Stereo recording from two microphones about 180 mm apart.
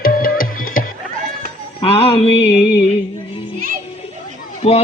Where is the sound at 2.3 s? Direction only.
70° left (ahead or behind).